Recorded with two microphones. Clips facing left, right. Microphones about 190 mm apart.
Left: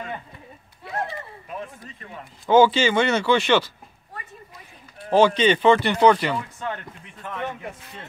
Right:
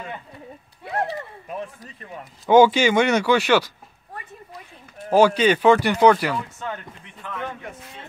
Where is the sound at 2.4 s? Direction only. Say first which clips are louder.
Right 2 dB; 15° right (ahead or behind).